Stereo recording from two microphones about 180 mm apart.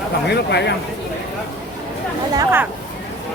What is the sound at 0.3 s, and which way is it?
Speech, 70° left (ahead or behind).